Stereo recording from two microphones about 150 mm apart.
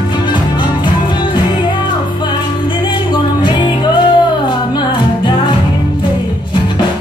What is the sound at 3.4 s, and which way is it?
Music, 30° left (ahead or behind).